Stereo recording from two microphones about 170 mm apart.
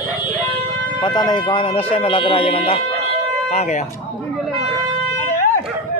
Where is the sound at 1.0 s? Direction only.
25° left (ahead or behind); by 3.8 s 40° left (ahead or behind).